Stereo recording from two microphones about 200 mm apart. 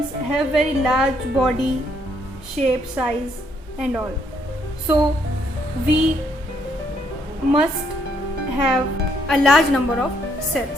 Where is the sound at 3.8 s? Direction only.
5° right (ahead or behind).